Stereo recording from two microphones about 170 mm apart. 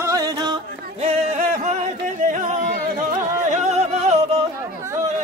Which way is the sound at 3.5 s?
40° right (ahead or behind).